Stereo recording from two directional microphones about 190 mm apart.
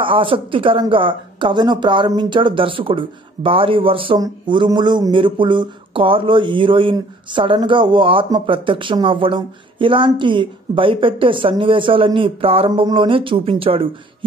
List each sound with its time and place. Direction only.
0.0 s speech: 25° right (ahead or behind)